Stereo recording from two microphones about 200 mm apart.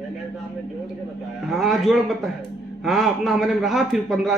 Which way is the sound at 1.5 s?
Centre (ahead or behind).